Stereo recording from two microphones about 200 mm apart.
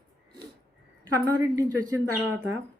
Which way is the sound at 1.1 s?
15° right (ahead or behind).